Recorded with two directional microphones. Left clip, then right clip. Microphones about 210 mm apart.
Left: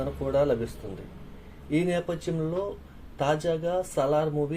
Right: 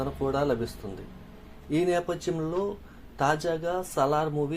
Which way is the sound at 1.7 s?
25° right (ahead or behind).